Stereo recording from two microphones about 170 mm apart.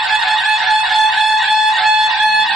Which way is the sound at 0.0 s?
Centre (ahead or behind).